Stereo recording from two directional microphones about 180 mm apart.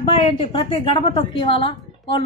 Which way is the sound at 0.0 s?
30° left (ahead or behind).